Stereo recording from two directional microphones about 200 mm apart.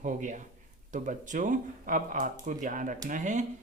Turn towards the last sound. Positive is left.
turn(degrees=-40)  # may be behind; listen again after turning